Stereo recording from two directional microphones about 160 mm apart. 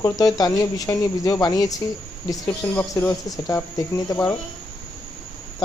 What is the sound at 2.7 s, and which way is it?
Speech, 15° left (ahead or behind).